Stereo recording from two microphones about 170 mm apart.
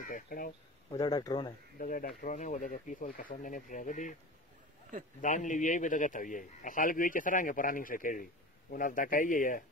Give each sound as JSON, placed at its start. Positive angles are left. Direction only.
{"t": 0.0, "sound": "speech", "side_deg": 55}
{"t": 0.9, "sound": "speech", "side_deg": 20}
{"t": 1.8, "sound": "a man's voice", "side_deg": 55}
{"t": 5.2, "sound": "a man's voice", "side_deg": 50}